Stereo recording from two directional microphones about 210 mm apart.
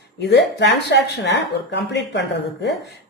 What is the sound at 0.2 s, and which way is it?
Speech, 55° left (ahead or behind).